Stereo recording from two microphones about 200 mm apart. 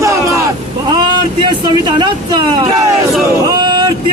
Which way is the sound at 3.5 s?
20° right (ahead or behind).